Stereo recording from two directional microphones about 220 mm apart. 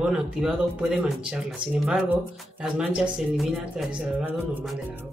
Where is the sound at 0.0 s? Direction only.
5° right (ahead or behind).